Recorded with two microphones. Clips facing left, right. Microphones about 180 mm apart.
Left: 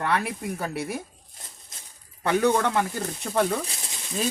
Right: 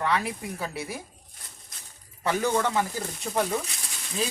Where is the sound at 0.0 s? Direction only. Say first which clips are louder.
Left 1 dB; 55° left (ahead or behind).